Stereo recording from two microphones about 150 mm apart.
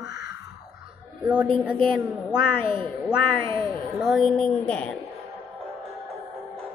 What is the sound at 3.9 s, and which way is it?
A woman's voice, centre (ahead or behind).